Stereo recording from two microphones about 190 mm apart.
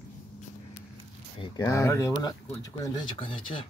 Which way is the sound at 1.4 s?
15° left (ahead or behind).